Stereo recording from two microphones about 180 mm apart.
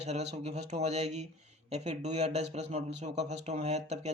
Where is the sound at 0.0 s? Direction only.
35° right (ahead or behind).